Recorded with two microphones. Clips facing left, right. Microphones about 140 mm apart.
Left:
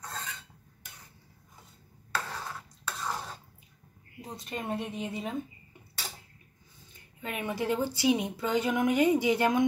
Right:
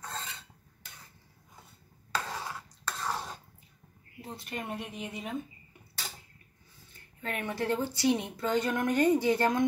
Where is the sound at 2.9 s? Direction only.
5° left (ahead or behind).